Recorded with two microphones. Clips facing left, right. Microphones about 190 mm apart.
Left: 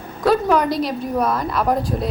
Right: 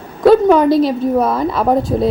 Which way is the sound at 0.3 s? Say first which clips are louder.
Right 8 dB; 25° right (ahead or behind).